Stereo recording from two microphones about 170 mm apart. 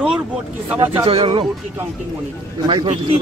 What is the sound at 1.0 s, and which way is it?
Speech, 30° right (ahead or behind).